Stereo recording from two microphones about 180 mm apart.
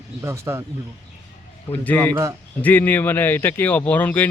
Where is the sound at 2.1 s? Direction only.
15° right (ahead or behind).